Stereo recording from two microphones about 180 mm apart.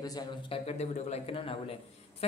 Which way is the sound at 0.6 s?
35° left (ahead or behind).